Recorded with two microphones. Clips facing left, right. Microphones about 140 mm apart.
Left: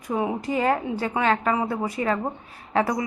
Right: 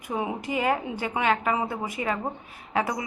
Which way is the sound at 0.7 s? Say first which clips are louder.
Left 3 dB; 15° right (ahead or behind).